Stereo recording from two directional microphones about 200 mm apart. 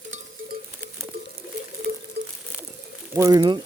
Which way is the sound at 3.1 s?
15° right (ahead or behind).